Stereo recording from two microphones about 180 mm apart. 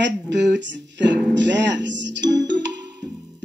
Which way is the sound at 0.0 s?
80° right.